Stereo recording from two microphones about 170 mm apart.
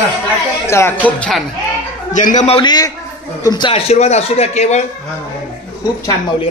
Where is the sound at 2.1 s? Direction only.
45° left (ahead or behind).